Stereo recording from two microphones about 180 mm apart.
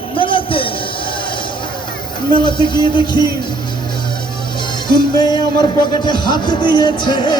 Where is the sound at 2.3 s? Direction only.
25° left (ahead or behind).